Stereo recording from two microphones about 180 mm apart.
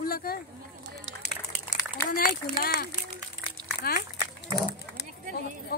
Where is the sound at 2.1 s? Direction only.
55° left (ahead or behind).